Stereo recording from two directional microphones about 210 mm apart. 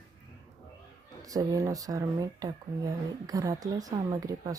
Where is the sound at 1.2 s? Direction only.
15° right (ahead or behind).